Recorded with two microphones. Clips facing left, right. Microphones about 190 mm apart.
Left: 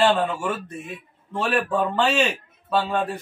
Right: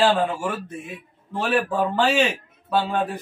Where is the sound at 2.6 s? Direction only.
15° right (ahead or behind).